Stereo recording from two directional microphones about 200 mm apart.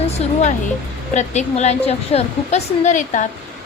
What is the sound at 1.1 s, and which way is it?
A woman's voice, 35° left (ahead or behind).